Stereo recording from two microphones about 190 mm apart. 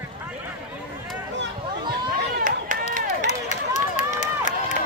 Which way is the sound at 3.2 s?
40° left (ahead or behind).